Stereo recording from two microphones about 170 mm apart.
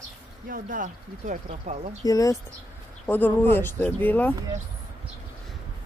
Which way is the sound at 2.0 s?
20° left (ahead or behind).